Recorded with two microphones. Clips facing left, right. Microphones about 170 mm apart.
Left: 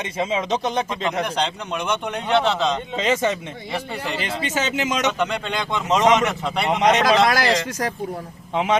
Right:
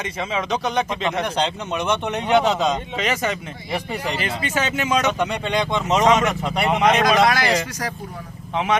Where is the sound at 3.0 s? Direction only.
25° left (ahead or behind).